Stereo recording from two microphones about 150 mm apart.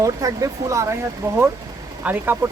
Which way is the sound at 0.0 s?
20° right (ahead or behind).